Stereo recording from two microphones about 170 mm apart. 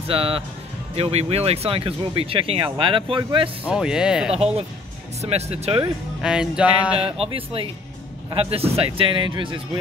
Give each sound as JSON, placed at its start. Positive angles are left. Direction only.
{"t": 0.1, "sound": "speech", "side_deg": -35}
{"t": 3.6, "sound": "music", "side_deg": -5}
{"t": 5.2, "sound": "speech", "side_deg": -40}
{"t": 6.2, "sound": "music", "side_deg": -5}
{"t": 7.0, "sound": "speech", "side_deg": -35}